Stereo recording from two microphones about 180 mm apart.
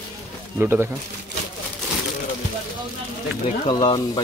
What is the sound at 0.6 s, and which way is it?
Speech, 10° right (ahead or behind).